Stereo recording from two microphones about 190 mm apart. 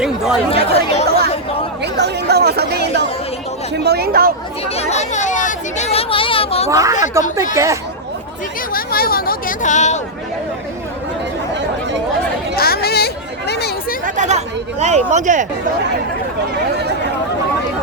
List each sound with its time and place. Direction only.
0.5 s chatter: 30° left (ahead or behind)
1.8 s chatter: 60° right (ahead or behind)
3.8 s speech: 60° right (ahead or behind)
4.6 s a sound: 35° left (ahead or behind)
6.7 s speech: 15° right (ahead or behind)
8.7 s speech: 50° left (ahead or behind)
12.5 s speech: 55° left (ahead or behind)
13.5 s chatter: 60° left (ahead or behind)
14.0 s speech: 40° right (ahead or behind)